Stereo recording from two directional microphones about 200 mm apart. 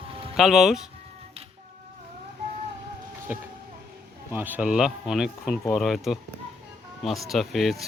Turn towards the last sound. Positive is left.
turn(degrees=0)  # may be behind; listen again after turning